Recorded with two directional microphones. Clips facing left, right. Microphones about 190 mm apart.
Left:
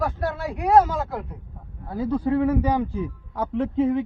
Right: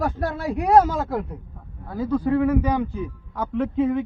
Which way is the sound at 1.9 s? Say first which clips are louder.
Right 1 dB; 25° left (ahead or behind).